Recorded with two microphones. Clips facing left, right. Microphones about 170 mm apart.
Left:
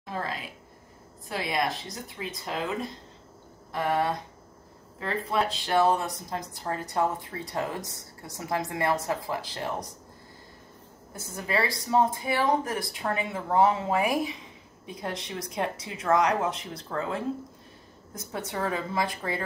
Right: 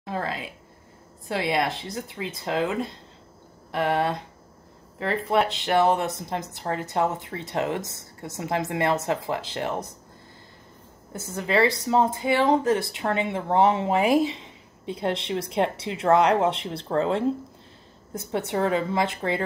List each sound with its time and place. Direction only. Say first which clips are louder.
0.0 s speech: right 4 dB; 25° right (ahead or behind)
3.9 s speech: right 1 dB; 25° right (ahead or behind)
5.5 s speech: right 2 dB; 20° right (ahead or behind)
11.1 s speech: right 6 dB; 25° right (ahead or behind)